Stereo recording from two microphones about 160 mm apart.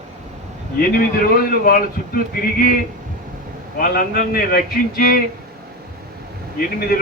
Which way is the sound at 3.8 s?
65° left (ahead or behind).